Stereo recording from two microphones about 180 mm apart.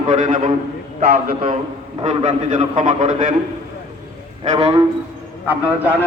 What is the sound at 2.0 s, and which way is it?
A man's voice, 40° right (ahead or behind).